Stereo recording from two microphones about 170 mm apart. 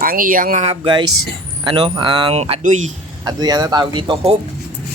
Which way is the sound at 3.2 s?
25° right (ahead or behind).